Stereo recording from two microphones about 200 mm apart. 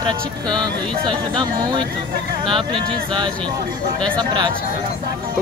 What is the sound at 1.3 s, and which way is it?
Speech, 25° right (ahead or behind).